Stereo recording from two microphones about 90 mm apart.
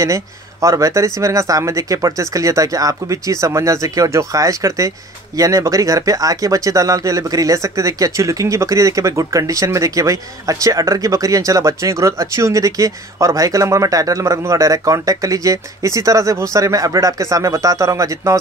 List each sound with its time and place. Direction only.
0.0 s speech: 35° right (ahead or behind)